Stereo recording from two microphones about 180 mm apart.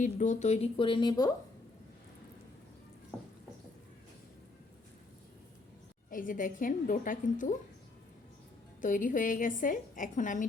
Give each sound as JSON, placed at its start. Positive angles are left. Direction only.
{"t": 0.0, "sound": "speech", "side_deg": 40}
{"t": 3.1, "sound": "a sound", "side_deg": 5}
{"t": 6.1, "sound": "a woman's voice", "side_deg": 50}
{"t": 8.8, "sound": "a woman's voice", "side_deg": 50}